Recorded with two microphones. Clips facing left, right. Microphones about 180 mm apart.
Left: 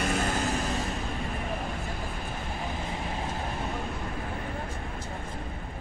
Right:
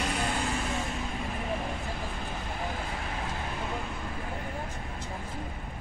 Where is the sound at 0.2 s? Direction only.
40° left (ahead or behind).